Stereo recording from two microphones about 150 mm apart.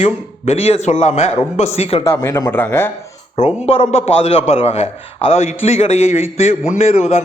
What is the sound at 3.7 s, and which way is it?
A man's voice, 40° left (ahead or behind).